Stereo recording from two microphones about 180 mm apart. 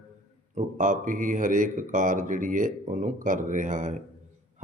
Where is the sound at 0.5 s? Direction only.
45° right (ahead or behind).